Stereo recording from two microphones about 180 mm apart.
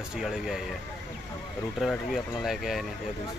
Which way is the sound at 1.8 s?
Centre (ahead or behind).